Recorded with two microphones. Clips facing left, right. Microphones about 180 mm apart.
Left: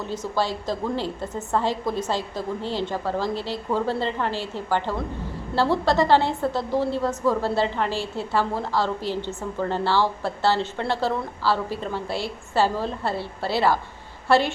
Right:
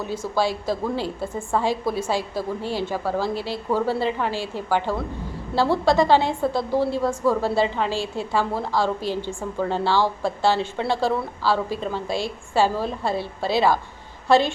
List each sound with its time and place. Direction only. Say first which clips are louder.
0.0 s a woman's voice: right 2 dB; 10° right (ahead or behind)